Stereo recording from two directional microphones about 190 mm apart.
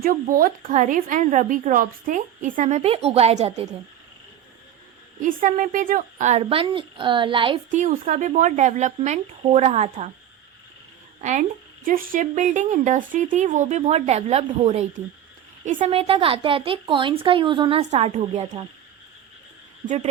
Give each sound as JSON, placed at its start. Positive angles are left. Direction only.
{"t": 0.0, "sound": "a woman's voice", "side_deg": -45}
{"t": 5.2, "sound": "speech", "side_deg": -45}
{"t": 7.7, "sound": "a woman's voice", "side_deg": -45}
{"t": 11.2, "sound": "a woman's voice", "side_deg": -40}
{"t": 19.8, "sound": "speech", "side_deg": -20}